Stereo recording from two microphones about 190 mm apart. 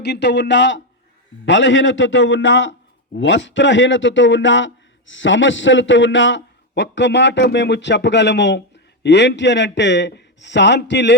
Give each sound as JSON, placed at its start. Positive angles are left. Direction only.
{"t": 0.0, "sound": "a man's voice", "side_deg": 65}